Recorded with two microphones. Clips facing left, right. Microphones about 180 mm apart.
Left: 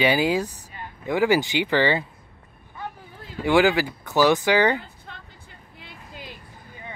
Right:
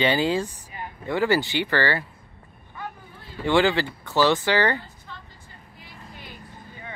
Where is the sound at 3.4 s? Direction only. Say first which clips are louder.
Left 2 dB; 10° left (ahead or behind).